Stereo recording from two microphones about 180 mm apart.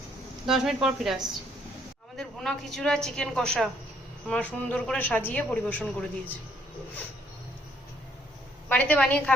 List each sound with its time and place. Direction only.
0.4 s a woman's voice: centre (ahead or behind)
8.7 s a woman's voice: 10° left (ahead or behind)